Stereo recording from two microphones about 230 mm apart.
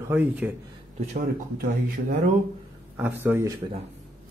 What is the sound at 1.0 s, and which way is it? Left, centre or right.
Speech, right.